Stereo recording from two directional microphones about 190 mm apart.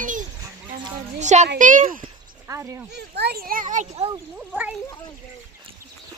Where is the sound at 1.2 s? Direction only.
40° right (ahead or behind).